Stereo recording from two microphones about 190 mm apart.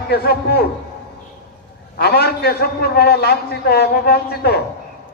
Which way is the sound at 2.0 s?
55° left (ahead or behind).